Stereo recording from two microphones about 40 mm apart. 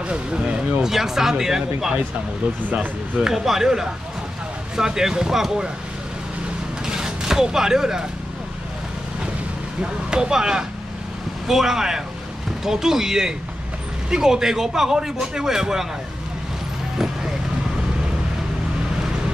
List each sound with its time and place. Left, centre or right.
0.1 s a sound: right
0.8 s a man's voice: centre
3.2 s a man's voice: centre
6.9 s vehicle: centre
10.1 s a man's voice: centre